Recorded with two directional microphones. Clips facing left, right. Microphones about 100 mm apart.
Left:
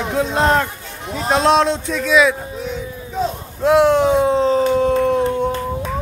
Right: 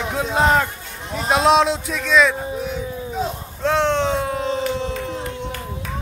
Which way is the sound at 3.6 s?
10° left (ahead or behind).